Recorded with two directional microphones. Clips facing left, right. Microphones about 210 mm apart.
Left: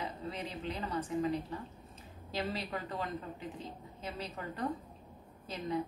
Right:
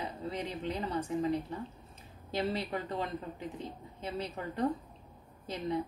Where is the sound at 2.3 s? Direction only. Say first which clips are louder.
Right 4 dB; 25° right (ahead or behind).